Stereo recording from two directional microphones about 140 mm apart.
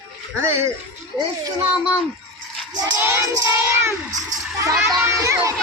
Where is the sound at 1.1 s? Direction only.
35° right (ahead or behind).